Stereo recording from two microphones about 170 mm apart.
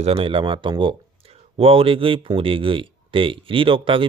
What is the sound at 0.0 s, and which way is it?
Speech, 35° right (ahead or behind).